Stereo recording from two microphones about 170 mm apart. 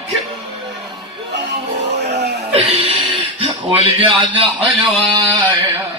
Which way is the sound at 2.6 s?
35° right (ahead or behind).